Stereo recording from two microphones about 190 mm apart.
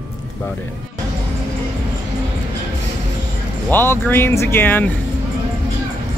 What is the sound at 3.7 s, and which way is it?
Speech, 10° left (ahead or behind).